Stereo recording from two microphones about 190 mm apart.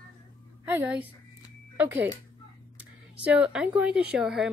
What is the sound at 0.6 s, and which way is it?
Speech, 10° right (ahead or behind).